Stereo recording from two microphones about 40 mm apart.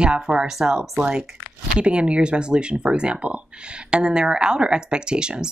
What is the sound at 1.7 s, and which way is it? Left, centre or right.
Speech, right.